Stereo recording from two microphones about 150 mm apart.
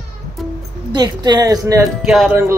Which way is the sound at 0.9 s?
25° right (ahead or behind).